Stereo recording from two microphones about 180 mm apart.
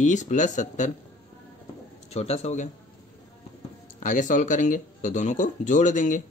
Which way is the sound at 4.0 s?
45° left (ahead or behind).